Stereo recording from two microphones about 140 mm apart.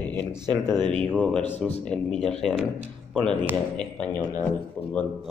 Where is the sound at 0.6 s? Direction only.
Centre (ahead or behind).